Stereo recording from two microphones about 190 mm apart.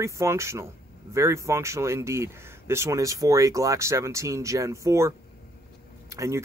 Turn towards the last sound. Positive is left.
turn(degrees=-15)  # may be behind; listen again after turning